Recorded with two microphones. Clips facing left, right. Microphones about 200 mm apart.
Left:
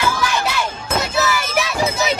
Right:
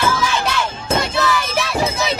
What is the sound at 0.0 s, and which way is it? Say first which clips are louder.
Music: right 1 dB; 15° left (ahead or behind).